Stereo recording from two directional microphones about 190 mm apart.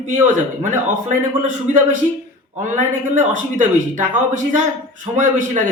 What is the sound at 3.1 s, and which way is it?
A man's voice, 40° right (ahead or behind).